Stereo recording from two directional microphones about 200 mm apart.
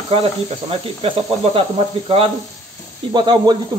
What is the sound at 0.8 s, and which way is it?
Speech, 30° right (ahead or behind).